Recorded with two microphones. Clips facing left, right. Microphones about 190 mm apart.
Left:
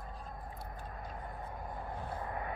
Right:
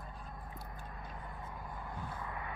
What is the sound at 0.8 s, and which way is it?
Vehicle, 40° left (ahead or behind).